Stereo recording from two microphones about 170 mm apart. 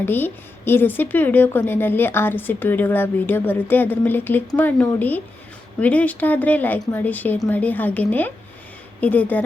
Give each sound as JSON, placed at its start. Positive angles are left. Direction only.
{"t": 0.0, "sound": "a woman's voice", "side_deg": 10}